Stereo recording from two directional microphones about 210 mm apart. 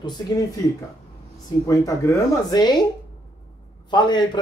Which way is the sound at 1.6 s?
15° left (ahead or behind).